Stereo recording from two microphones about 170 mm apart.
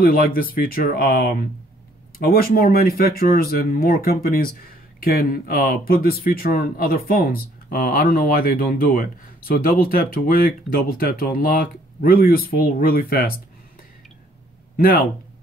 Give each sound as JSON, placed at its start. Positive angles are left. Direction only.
{"t": 0.0, "sound": "speech", "side_deg": 60}
{"t": 14.8, "sound": "speech", "side_deg": 60}